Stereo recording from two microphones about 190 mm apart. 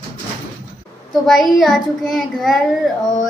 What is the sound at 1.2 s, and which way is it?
Speech, centre (ahead or behind).